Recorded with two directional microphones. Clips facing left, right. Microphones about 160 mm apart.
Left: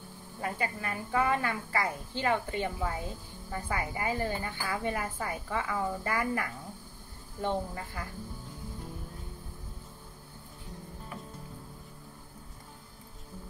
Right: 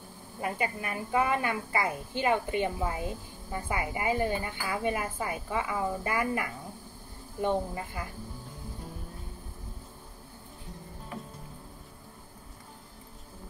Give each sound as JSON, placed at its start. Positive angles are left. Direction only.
{"t": 0.4, "sound": "a woman's voice", "side_deg": -15}